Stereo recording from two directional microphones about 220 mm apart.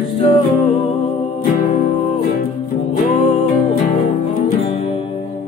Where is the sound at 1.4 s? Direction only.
40° left (ahead or behind).